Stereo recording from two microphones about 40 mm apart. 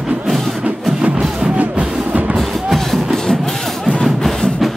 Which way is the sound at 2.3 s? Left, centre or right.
Centre.